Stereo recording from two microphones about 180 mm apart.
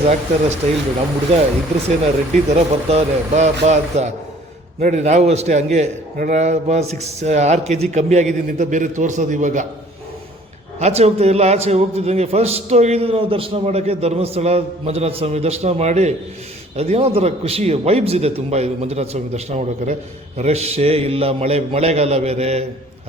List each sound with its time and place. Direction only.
0.0 s a man's voice: 35° right (ahead or behind)
2.5 s a man's voice: 35° right (ahead or behind)
10.8 s a man's voice: 35° right (ahead or behind)